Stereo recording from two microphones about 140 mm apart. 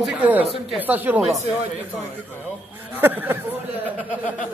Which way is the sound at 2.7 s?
15° right (ahead or behind).